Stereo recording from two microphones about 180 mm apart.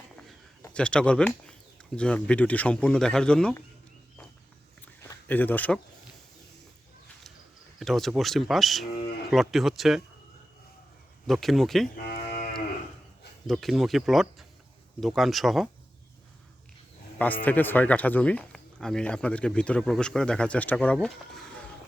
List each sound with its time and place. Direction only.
0.7 s speech: 5° left (ahead or behind)
5.0 s speech: 10° left (ahead or behind)
7.8 s speech: centre (ahead or behind)
11.3 s speech: centre (ahead or behind)
12.0 s cattle: 45° left (ahead or behind)
13.5 s speech: centre (ahead or behind)
17.4 s speech: 10° left (ahead or behind)